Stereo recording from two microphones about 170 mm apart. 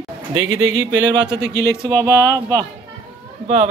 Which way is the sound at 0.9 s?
90° right.